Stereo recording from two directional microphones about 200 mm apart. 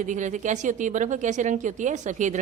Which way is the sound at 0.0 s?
40° right (ahead or behind).